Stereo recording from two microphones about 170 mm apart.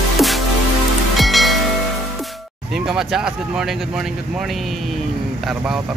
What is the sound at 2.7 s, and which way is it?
Speech, centre (ahead or behind).